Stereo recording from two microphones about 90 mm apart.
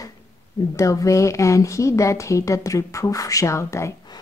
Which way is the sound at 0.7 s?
35° left (ahead or behind).